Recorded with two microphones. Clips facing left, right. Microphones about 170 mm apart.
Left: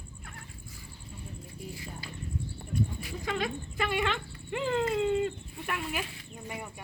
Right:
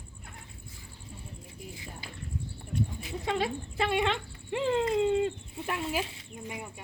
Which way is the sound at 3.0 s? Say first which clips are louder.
Right 2 dB; 20° right (ahead or behind).